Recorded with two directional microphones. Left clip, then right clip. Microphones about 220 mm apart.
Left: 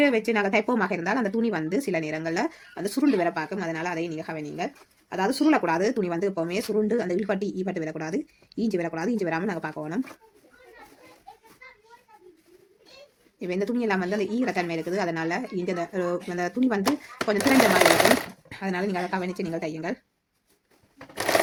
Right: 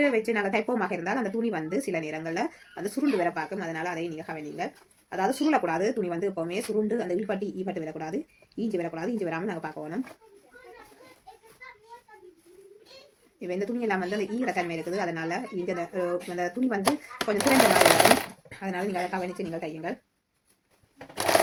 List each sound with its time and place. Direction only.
0.0 s speech: 45° left (ahead or behind)
13.4 s speech: 45° left (ahead or behind)
18.4 s speech: 45° left (ahead or behind)
21.2 s sewing machine: 5° left (ahead or behind)